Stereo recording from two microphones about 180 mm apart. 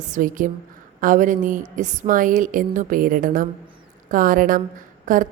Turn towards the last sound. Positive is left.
turn(degrees=-45)  # may be behind; listen again after turning